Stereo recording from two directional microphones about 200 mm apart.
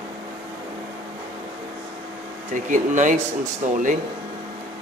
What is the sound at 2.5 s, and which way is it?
Speech, 40° right (ahead or behind).